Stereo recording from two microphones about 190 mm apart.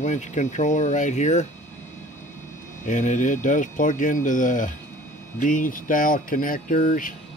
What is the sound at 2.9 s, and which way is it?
Speech, 40° left (ahead or behind).